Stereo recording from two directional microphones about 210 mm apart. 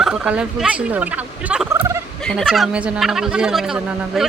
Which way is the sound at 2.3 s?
Centre (ahead or behind).